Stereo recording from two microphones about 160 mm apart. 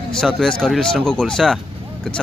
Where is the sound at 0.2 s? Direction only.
5° left (ahead or behind).